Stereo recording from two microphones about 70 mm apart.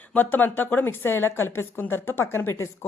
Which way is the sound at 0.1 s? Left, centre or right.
Left.